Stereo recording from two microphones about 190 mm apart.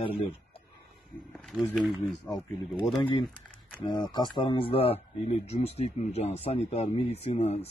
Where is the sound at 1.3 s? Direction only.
Centre (ahead or behind).